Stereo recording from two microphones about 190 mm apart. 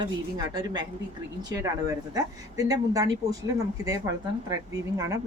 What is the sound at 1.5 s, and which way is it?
Speech, 20° right (ahead or behind).